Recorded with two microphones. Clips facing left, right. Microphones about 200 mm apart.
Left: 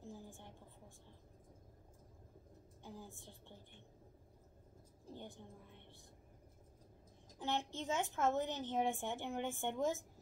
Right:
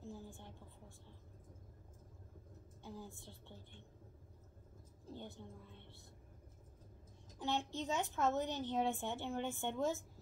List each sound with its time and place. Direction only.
0.0 s a sound: 15° left (ahead or behind)
2.8 s a woman's voice: 15° left (ahead or behind)
5.1 s a woman's voice: 15° left (ahead or behind)
7.3 s a child's voice: 15° left (ahead or behind)